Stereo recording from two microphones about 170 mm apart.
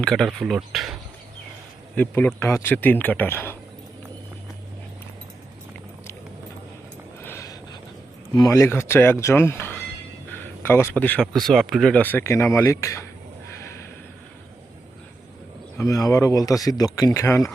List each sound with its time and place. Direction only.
0.0 s speech: 5° left (ahead or behind)
2.0 s speech: 10° left (ahead or behind)
7.2 s a sound: 15° left (ahead or behind)
8.4 s speech: 20° left (ahead or behind)
15.8 s speech: 20° left (ahead or behind)